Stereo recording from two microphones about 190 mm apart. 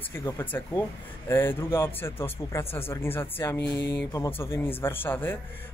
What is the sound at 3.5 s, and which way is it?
Speech, 65° left (ahead or behind).